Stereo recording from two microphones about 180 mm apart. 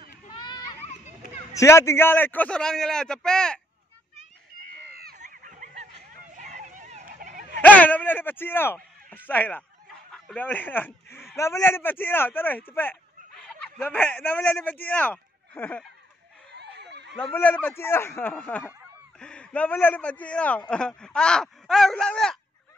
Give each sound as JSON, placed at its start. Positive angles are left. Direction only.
{"t": 0.3, "sound": "children playing", "side_deg": 25}
{"t": 1.5, "sound": "a man's voice", "side_deg": 15}
{"t": 5.1, "sound": "a sound", "side_deg": -45}
{"t": 7.6, "sound": "a man's voice", "side_deg": 10}
{"t": 16.5, "sound": "a sound", "side_deg": -70}
{"t": 17.3, "sound": "speech", "side_deg": 10}